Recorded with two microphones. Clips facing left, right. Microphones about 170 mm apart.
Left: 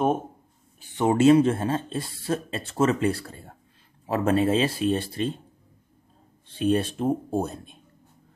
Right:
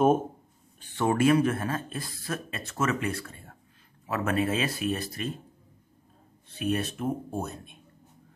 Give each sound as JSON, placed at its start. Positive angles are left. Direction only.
{"t": 0.7, "sound": "speech", "side_deg": 15}
{"t": 6.4, "sound": "speech", "side_deg": 30}